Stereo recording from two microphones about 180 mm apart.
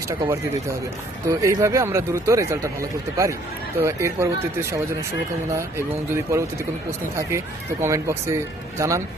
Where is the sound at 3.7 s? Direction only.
15° right (ahead or behind).